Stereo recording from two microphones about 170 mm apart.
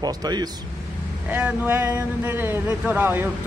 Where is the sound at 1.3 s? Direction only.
10° right (ahead or behind).